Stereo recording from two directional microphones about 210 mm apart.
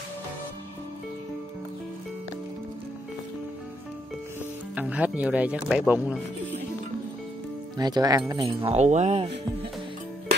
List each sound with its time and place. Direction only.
4.7 s speech: 5° right (ahead or behind)
7.7 s speech: 20° right (ahead or behind)
8.6 s speech: 35° right (ahead or behind)